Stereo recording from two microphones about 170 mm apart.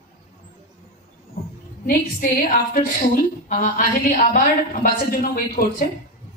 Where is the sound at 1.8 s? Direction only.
55° left (ahead or behind).